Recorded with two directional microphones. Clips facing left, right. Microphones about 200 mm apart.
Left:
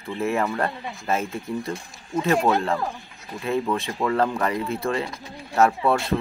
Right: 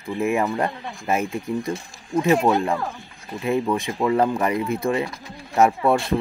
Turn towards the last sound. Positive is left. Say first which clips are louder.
# right 2 dB
turn(degrees=-15)  # may be behind; listen again after turning